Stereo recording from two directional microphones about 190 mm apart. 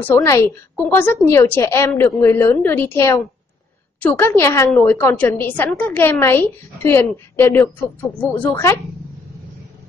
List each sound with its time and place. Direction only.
0.0 s a woman's voice: 15° left (ahead or behind)